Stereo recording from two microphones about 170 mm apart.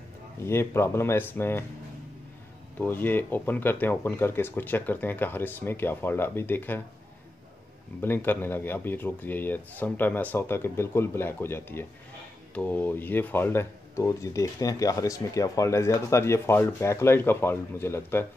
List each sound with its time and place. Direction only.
0.4 s speech: 15° left (ahead or behind)
2.8 s speech: 10° left (ahead or behind)
8.0 s speech: 10° left (ahead or behind)